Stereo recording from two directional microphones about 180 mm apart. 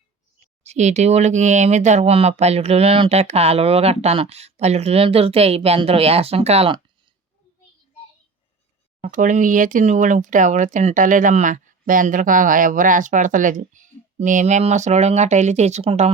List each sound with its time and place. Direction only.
0.6 s speech: 40° right (ahead or behind)
9.0 s speech: 45° right (ahead or behind)